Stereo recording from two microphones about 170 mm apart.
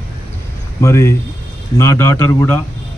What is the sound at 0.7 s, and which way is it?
A man's voice, 15° left (ahead or behind).